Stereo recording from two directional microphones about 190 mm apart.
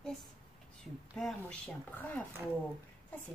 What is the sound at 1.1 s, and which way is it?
Speech, 5° left (ahead or behind).